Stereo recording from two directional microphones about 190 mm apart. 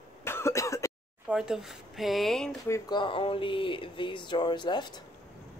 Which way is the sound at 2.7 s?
25° left (ahead or behind).